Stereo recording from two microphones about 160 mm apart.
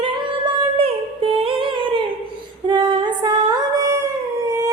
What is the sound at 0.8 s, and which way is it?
Music, 35° right (ahead or behind).